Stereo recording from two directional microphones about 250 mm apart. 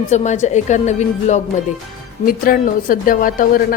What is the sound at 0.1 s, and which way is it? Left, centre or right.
A woman's voice, left.